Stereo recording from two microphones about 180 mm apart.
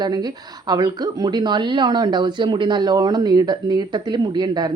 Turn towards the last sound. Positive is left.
turn(degrees=-25)  # may be behind; listen again after turning